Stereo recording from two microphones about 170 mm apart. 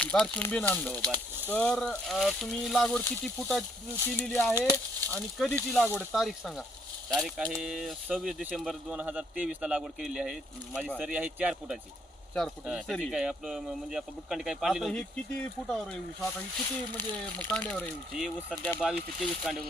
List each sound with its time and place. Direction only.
0.0 s speech: 5° left (ahead or behind)
4.0 s speech: 10° left (ahead or behind)
4.9 s speech: 10° left (ahead or behind)